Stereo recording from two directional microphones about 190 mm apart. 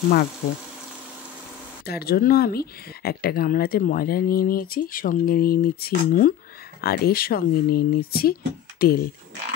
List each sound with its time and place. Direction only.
1.9 s speech: 55° left (ahead or behind)